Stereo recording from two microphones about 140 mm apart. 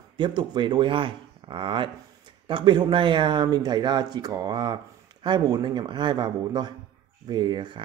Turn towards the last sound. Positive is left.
turn(degrees=-35)  # may be behind; listen again after turning